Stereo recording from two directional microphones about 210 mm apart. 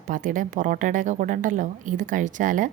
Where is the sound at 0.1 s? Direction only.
40° right (ahead or behind).